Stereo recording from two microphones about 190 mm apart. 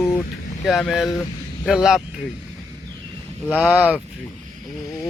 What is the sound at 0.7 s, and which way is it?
Speech, centre (ahead or behind).